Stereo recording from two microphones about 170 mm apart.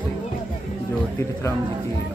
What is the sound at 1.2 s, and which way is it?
Speech, 15° left (ahead or behind).